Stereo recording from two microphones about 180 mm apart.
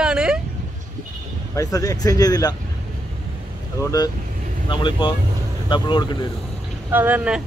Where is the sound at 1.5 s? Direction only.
20° left (ahead or behind).